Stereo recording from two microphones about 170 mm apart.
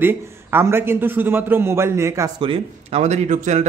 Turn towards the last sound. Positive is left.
turn(degrees=-45)  # may be behind; listen again after turning